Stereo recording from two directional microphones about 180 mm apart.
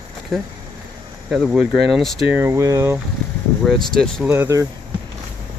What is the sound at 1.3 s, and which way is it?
Speech, centre (ahead or behind).